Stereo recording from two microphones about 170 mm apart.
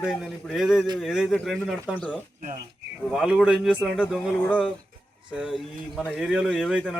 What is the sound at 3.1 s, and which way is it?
Speech, 5° right (ahead or behind).